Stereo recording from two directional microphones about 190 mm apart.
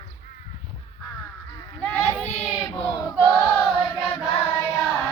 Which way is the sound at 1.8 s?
10° left (ahead or behind).